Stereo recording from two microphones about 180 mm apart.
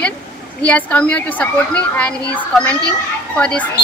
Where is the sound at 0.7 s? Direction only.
10° left (ahead or behind).